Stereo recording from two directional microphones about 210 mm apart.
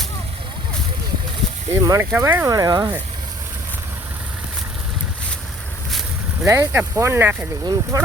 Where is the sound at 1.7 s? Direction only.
15° right (ahead or behind).